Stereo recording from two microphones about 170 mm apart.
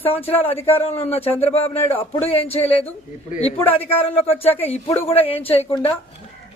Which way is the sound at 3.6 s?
10° left (ahead or behind).